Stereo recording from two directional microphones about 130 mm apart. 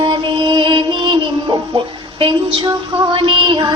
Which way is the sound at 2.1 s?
40° right (ahead or behind).